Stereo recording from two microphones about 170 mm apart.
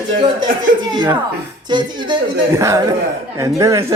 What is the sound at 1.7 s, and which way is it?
A man's voice, 25° right (ahead or behind).